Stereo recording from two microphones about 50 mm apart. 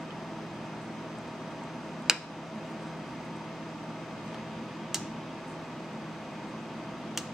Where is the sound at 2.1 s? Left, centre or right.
Centre.